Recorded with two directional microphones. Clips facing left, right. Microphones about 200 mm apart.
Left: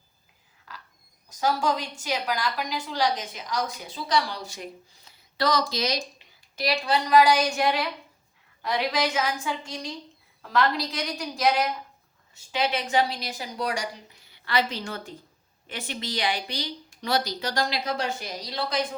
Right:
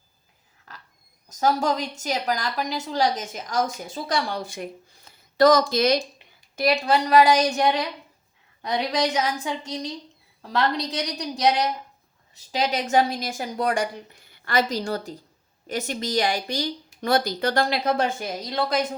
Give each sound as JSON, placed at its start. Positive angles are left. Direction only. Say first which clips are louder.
{"t": 1.3, "sound": "a woman's voice", "louder": "right 3 dB", "side_deg": -40}
{"t": 7.3, "sound": "a woman's voice", "louder": "right 3 dB", "side_deg": -35}